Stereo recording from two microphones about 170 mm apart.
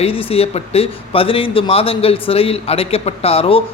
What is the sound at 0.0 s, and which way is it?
Speech, 35° left (ahead or behind).